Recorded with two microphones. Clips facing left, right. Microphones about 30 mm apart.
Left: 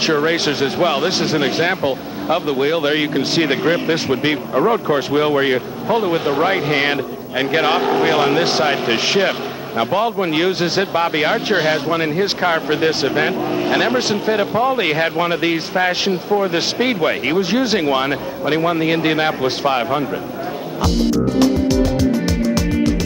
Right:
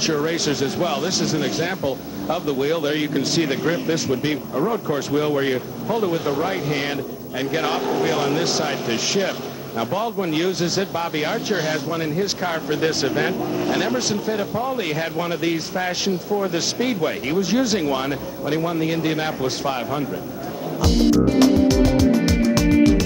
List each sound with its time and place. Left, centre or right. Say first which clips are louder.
0.0 s speech: left 5 dB; left